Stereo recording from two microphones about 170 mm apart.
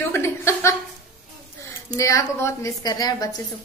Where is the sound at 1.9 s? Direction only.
20° left (ahead or behind).